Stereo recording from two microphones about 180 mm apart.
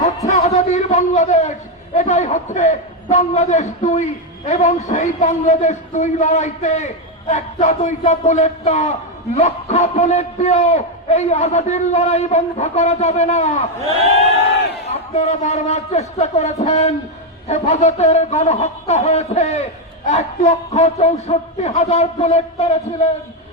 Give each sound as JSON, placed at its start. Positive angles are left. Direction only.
{"t": 0.3, "sound": "a sound", "side_deg": 40}
{"t": 2.0, "sound": "a man's voice", "side_deg": 40}
{"t": 15.1, "sound": "a man's voice", "side_deg": 40}